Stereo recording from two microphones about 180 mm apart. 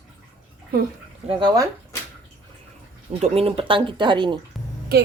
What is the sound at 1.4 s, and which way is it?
Speech, 25° right (ahead or behind).